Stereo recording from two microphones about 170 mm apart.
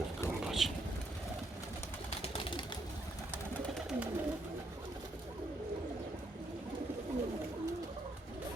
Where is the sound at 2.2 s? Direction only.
30° left (ahead or behind).